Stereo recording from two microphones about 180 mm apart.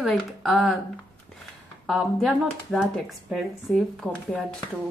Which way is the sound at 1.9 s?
Centre (ahead or behind).